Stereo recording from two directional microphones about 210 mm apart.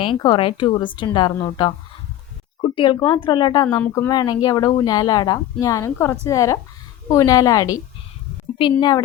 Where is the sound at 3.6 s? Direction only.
10° left (ahead or behind).